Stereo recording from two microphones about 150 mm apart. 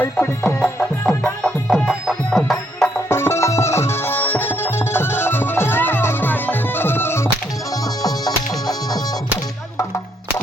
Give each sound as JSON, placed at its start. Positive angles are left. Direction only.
{"t": 0.0, "sound": "music", "side_deg": 5}
{"t": 3.1, "sound": "music", "side_deg": 15}